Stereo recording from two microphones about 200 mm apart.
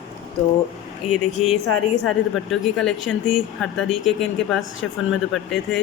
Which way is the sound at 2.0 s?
Centre (ahead or behind).